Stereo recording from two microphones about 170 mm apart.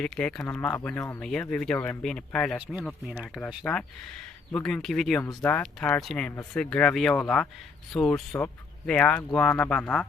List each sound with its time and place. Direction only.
0.0 s speech: 5° left (ahead or behind)
2.6 s speech: 5° right (ahead or behind)
3.6 s speech: 10° left (ahead or behind)
5.2 s speech: 20° left (ahead or behind)
5.5 s speech: 10° left (ahead or behind)